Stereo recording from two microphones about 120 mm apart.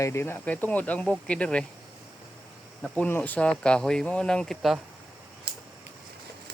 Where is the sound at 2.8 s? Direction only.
15° left (ahead or behind).